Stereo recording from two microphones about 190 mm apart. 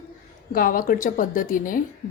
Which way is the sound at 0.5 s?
50° left (ahead or behind).